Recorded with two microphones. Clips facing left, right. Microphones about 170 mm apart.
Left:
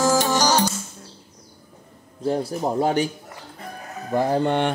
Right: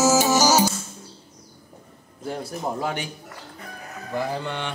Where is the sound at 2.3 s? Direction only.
35° left (ahead or behind).